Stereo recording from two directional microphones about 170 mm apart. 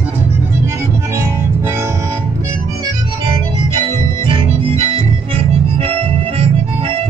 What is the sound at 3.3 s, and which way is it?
Organ, 30° right (ahead or behind).